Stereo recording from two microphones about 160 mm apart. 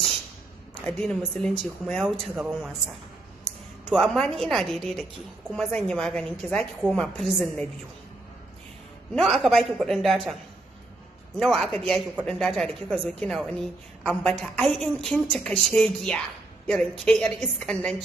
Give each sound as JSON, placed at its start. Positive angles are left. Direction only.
{"t": 0.8, "sound": "a woman's voice", "side_deg": 5}
{"t": 9.1, "sound": "speech", "side_deg": 0}
{"t": 11.3, "sound": "speech", "side_deg": 0}